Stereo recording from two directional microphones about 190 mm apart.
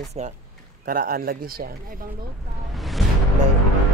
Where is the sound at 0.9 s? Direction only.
50° right (ahead or behind).